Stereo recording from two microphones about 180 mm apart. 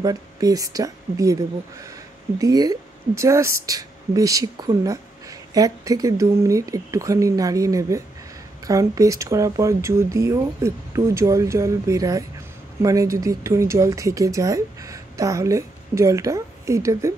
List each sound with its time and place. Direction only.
0.0 s a woman's voice: 20° right (ahead or behind)